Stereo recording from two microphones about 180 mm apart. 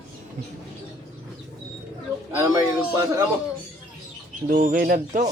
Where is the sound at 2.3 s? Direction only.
15° right (ahead or behind).